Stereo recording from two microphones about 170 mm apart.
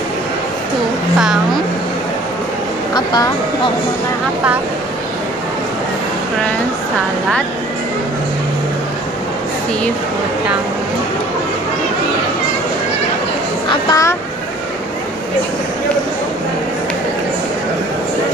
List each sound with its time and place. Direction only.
2.9 s a woman's voice: 25° left (ahead or behind)
13.8 s speech: 20° left (ahead or behind)